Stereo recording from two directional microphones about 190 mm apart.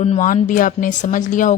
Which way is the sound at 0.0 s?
40° left (ahead or behind).